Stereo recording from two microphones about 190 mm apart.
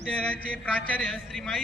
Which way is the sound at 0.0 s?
5° left (ahead or behind).